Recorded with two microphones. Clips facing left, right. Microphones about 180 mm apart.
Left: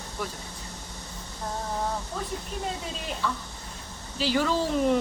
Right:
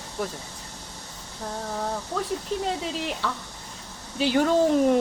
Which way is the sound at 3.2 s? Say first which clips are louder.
Left 4 dB; 75° right (ahead or behind).